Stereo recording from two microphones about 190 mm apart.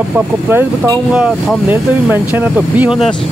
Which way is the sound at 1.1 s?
5° right (ahead or behind).